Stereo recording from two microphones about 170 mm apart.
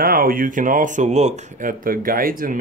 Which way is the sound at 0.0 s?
60° right (ahead or behind).